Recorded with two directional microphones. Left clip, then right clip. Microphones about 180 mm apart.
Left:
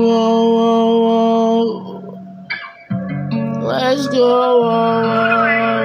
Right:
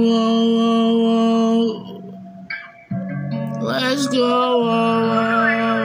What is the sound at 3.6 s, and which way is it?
Music, 15° right (ahead or behind).